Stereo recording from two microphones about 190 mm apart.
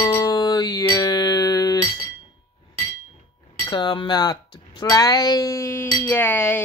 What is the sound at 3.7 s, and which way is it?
Speech, 25° left (ahead or behind).